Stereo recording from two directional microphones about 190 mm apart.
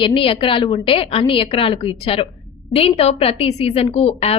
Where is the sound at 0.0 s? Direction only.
25° left (ahead or behind).